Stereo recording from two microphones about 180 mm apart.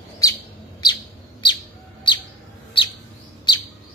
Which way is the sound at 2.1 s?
25° left (ahead or behind).